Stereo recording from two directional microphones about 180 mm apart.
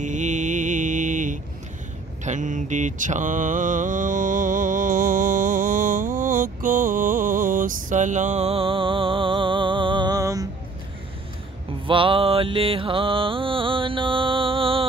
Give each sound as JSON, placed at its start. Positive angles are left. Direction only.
{"t": 0.0, "sound": "mantra", "side_deg": -40}
{"t": 11.8, "sound": "mantra", "side_deg": -30}